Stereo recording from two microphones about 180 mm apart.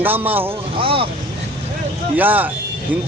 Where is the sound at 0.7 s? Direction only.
30° right (ahead or behind).